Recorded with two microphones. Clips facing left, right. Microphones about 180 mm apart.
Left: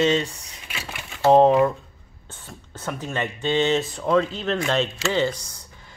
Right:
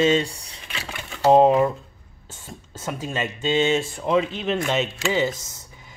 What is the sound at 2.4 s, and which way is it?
Speech, 20° right (ahead or behind).